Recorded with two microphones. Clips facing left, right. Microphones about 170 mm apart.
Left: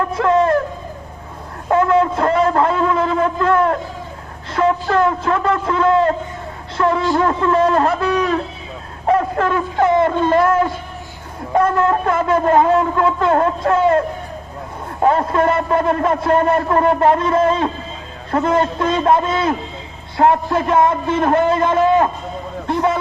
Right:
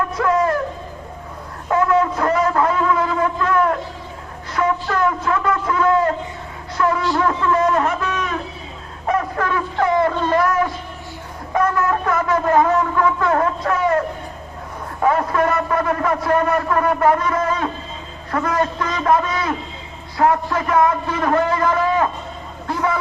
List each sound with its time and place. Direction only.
0.1 s a sound: 25° left (ahead or behind)
1.7 s a man's voice: 30° left (ahead or behind)
9.0 s a sound: 30° left (ahead or behind)
9.8 s a man's voice: 25° left (ahead or behind)
15.0 s a man's voice: 25° left (ahead or behind)
22.6 s vehicle: 25° left (ahead or behind)